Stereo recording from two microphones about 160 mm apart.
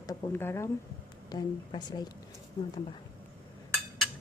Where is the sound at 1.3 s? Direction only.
25° left (ahead or behind).